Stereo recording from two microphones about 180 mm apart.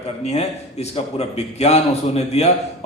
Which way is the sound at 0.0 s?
35° left (ahead or behind).